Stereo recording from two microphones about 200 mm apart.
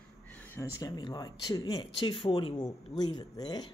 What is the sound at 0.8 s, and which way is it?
Speech, 20° left (ahead or behind).